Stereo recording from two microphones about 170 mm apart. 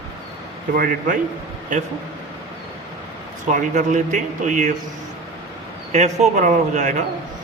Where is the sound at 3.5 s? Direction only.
45° right (ahead or behind).